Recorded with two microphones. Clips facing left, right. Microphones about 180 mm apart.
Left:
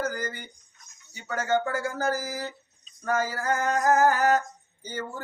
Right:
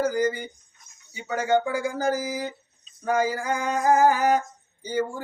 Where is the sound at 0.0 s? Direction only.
10° right (ahead or behind).